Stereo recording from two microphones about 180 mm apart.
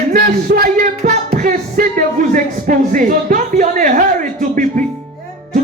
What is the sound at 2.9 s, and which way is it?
Speech, 45° right (ahead or behind).